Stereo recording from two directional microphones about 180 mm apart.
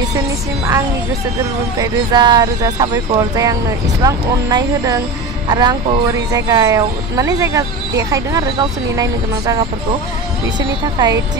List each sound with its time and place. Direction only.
1.8 s speech: 25° right (ahead or behind)
11.0 s speech: 20° right (ahead or behind)